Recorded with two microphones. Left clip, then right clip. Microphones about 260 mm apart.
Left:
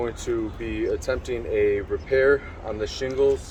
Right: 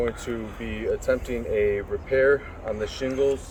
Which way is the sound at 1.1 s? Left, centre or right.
Left.